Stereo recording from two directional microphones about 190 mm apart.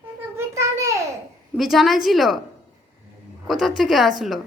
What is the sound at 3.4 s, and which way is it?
Speech, centre (ahead or behind).